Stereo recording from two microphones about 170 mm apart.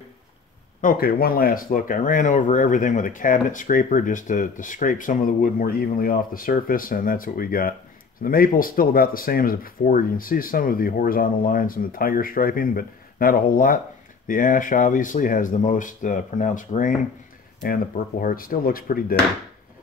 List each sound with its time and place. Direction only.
0.7 s speech: 60° left (ahead or behind)